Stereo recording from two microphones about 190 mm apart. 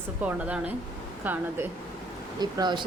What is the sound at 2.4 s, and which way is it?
Speech, 20° right (ahead or behind).